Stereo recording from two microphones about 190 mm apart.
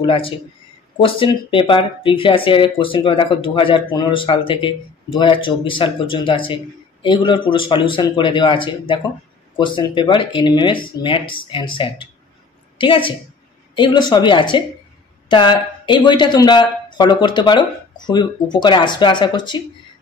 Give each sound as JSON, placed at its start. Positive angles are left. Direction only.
{"t": 0.0, "sound": "a woman's voice", "side_deg": 30}